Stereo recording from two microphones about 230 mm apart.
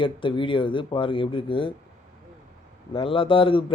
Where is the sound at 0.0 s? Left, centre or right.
Left.